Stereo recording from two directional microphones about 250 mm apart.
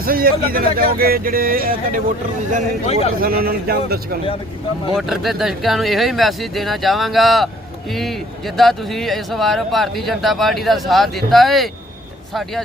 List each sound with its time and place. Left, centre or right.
0.0 s speech: right
2.8 s a man's voice: left
3.2 s speech: right
4.9 s speech: centre